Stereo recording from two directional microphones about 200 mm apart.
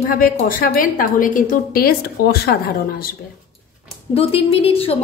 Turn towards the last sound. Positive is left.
turn(degrees=30)  # may be behind; listen again after turning